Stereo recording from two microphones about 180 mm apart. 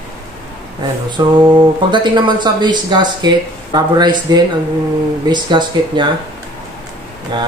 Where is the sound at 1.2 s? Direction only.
25° right (ahead or behind).